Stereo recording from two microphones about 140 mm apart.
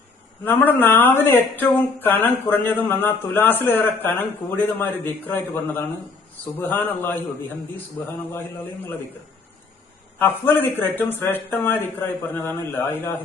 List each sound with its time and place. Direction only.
0.4 s speech: 15° left (ahead or behind)
10.2 s speech: 15° left (ahead or behind)